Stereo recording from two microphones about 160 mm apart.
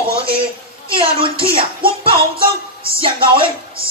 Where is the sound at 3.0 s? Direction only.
35° right (ahead or behind).